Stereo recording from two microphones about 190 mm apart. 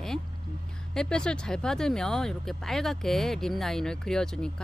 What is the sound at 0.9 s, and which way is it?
Speech, 5° left (ahead or behind).